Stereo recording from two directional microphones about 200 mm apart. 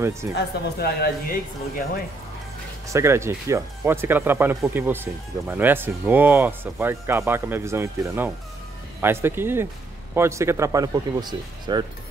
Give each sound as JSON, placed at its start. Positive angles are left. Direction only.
{"t": 0.3, "sound": "a woman's voice", "side_deg": 55}
{"t": 2.9, "sound": "speech", "side_deg": -15}